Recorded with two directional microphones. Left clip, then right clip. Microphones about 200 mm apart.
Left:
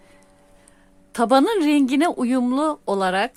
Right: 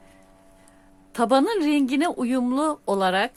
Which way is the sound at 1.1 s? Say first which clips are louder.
Left 3 dB; 15° left (ahead or behind).